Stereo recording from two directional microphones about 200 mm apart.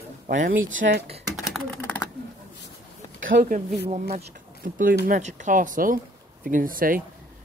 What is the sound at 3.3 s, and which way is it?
Speech, 40° right (ahead or behind).